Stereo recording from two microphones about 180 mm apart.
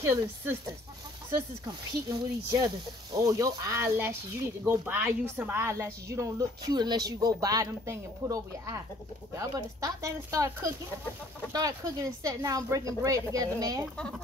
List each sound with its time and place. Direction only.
0.0 s a woman's voice: 15° right (ahead or behind)
1.7 s a woman's voice: 20° right (ahead or behind)